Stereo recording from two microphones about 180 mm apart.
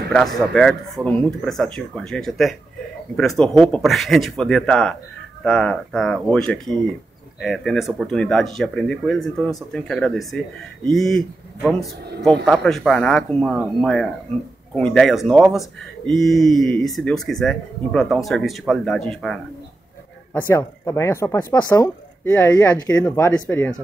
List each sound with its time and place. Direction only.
0.4 s speech: centre (ahead or behind)
12.4 s speech: centre (ahead or behind)
20.3 s speech: 15° left (ahead or behind)
22.8 s speech: 10° left (ahead or behind)